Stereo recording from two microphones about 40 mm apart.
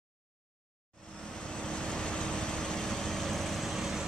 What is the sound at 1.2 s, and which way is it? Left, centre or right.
Vehicle, left.